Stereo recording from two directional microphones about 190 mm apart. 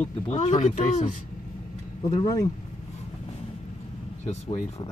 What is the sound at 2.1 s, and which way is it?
Speech, 20° left (ahead or behind).